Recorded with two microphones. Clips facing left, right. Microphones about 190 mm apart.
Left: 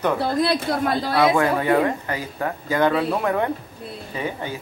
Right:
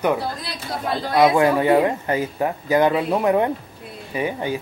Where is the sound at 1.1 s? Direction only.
20° right (ahead or behind).